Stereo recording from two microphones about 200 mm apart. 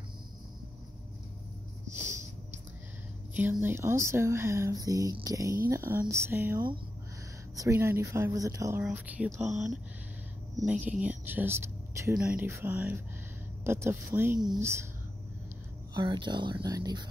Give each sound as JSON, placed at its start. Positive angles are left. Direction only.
{"t": 2.0, "sound": "snort", "side_deg": -15}
{"t": 3.3, "sound": "speech", "side_deg": -10}
{"t": 15.9, "sound": "speech", "side_deg": -20}